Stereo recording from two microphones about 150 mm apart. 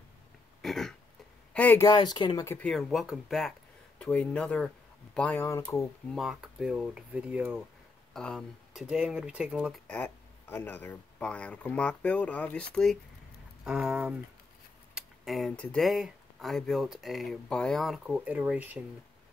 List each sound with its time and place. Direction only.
0.6 s throat clearing: centre (ahead or behind)
1.5 s speech: 10° left (ahead or behind)
1.9 s speech: 25° left (ahead or behind)
2.7 s speech: centre (ahead or behind); by 5.9 s 20° left (ahead or behind)
6.0 s speech: centre (ahead or behind)
8.1 s speech: 5° left (ahead or behind)
9.8 s speech: 10° left (ahead or behind); by 18.8 s 10° right (ahead or behind)